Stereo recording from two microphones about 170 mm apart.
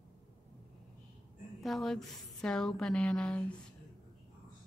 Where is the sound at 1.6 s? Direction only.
Centre (ahead or behind).